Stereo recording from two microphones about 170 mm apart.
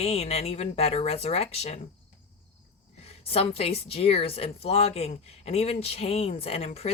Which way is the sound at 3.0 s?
35° left (ahead or behind).